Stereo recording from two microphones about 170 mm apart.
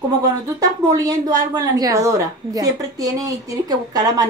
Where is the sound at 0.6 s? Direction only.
20° right (ahead or behind).